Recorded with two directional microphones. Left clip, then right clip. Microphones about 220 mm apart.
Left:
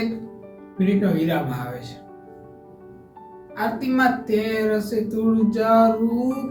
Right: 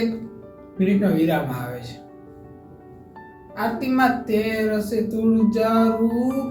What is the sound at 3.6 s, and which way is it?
Speech, 10° left (ahead or behind).